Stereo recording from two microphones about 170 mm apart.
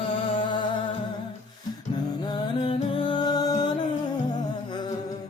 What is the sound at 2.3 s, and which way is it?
Music, 30° left (ahead or behind).